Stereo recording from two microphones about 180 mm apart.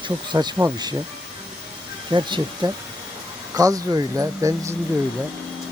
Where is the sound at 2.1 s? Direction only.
25° right (ahead or behind).